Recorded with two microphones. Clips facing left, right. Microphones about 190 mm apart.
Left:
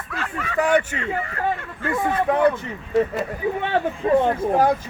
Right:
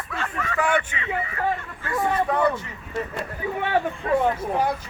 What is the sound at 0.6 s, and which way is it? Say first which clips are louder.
Speech: left 5 dB; 40° left (ahead or behind).